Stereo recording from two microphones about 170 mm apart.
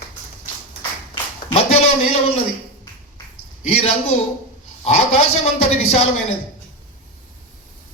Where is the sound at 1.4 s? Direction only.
35° left (ahead or behind).